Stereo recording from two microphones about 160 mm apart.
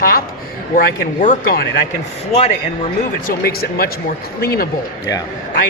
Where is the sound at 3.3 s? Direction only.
70° left (ahead or behind).